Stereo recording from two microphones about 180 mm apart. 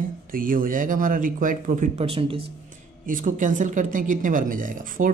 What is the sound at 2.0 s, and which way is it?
Speech, 30° right (ahead or behind).